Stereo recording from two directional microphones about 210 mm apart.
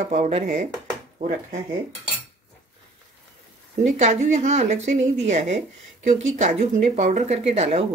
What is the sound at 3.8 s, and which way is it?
A woman's voice, 30° right (ahead or behind).